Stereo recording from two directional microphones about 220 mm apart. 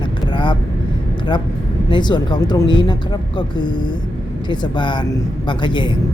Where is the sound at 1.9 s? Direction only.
20° left (ahead or behind).